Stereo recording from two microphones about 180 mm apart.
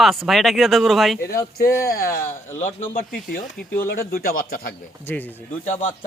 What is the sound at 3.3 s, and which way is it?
A man's voice, 55° left (ahead or behind).